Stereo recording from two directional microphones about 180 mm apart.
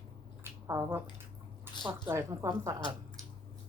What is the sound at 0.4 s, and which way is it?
Squish, 15° right (ahead or behind).